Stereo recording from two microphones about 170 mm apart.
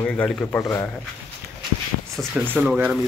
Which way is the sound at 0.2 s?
5° left (ahead or behind).